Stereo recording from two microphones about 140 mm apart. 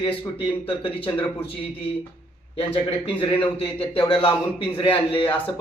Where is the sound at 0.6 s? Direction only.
40° left (ahead or behind).